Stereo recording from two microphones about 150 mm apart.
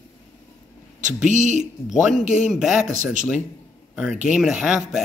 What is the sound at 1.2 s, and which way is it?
Speech, 55° right (ahead or behind).